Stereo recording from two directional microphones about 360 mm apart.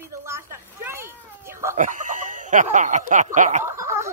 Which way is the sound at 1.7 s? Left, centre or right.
Right.